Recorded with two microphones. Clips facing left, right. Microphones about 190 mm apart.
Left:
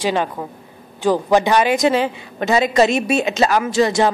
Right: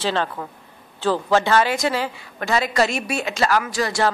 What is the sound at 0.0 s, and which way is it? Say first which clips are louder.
Speech: left 3 dB; 15° left (ahead or behind).